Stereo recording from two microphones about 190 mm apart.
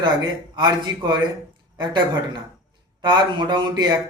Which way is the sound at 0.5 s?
25° right (ahead or behind).